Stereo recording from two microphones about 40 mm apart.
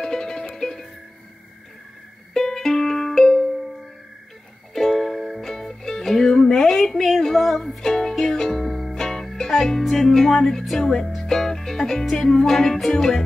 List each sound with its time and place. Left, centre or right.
0.0 s music: centre
2.3 s music: centre
4.7 s music: centre
5.4 s music: centre